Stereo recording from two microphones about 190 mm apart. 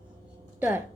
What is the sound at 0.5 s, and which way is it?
Speech, 10° right (ahead or behind).